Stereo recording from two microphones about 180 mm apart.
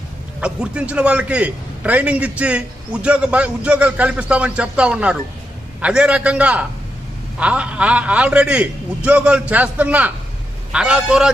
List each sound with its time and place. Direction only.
0.3 s a man's voice: 5° right (ahead or behind)